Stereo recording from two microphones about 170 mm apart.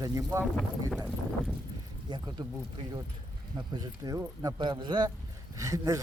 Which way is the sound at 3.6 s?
25° right (ahead or behind).